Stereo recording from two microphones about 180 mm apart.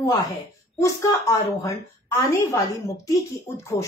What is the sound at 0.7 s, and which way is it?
Speech, 15° left (ahead or behind).